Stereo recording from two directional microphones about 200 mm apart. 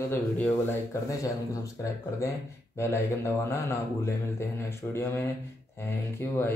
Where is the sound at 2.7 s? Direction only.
10° left (ahead or behind).